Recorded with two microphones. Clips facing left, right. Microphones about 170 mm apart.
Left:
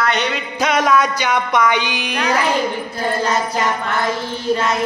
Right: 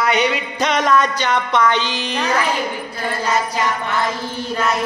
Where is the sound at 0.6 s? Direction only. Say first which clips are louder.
Left 1 dB; 5° left (ahead or behind).